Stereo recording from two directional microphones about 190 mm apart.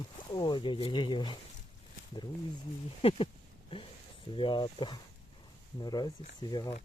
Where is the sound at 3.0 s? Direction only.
30° left (ahead or behind).